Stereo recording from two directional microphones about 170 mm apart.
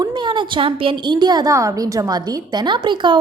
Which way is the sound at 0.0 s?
25° right (ahead or behind).